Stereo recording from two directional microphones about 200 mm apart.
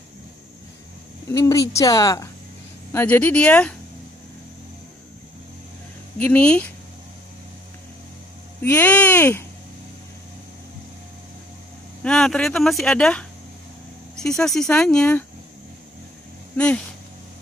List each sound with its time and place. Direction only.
1.3 s a woman's voice: 15° left (ahead or behind)
6.1 s a woman's voice: 10° left (ahead or behind)
8.6 s speech: 10° left (ahead or behind)
12.0 s speech: 5° left (ahead or behind)
16.5 s speech: 5° left (ahead or behind)